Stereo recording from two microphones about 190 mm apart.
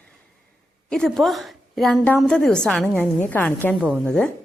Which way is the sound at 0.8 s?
5° left (ahead or behind).